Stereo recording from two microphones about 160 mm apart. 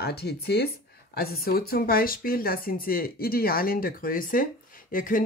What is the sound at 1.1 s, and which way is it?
Speech, 70° left (ahead or behind).